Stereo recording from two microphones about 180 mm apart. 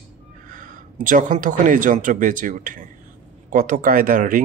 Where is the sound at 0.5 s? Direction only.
45° right (ahead or behind).